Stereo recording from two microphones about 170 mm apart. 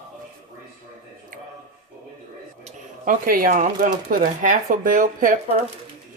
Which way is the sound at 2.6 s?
55° right (ahead or behind).